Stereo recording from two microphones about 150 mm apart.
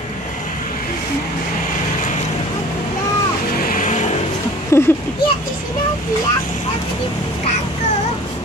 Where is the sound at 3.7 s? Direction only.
60° left (ahead or behind).